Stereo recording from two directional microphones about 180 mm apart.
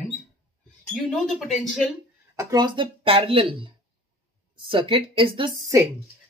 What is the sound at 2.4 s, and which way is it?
Speech, 20° right (ahead or behind).